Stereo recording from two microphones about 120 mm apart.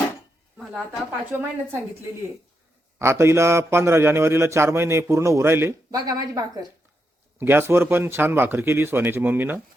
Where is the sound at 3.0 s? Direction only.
20° right (ahead or behind).